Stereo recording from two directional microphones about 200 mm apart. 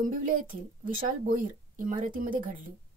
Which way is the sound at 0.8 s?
40° right (ahead or behind).